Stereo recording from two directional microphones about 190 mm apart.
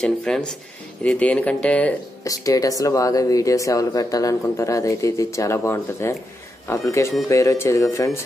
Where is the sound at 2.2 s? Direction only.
20° left (ahead or behind).